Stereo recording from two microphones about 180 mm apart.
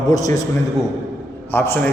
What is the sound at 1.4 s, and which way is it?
Speech, 10° left (ahead or behind).